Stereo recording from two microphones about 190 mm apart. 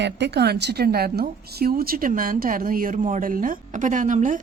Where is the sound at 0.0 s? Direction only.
65° right (ahead or behind).